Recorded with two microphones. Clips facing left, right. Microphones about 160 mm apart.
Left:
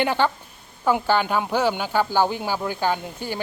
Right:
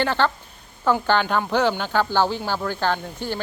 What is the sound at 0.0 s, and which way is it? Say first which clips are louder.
Speech: even; 10° left (ahead or behind).